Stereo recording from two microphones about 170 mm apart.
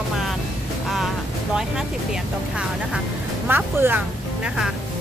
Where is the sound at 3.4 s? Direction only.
10° right (ahead or behind).